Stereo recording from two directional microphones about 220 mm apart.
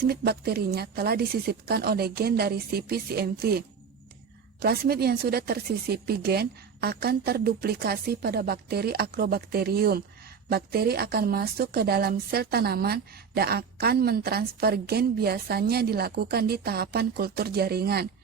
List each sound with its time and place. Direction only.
0.1 s speech: 45° right (ahead or behind)
4.6 s speech: 45° right (ahead or behind)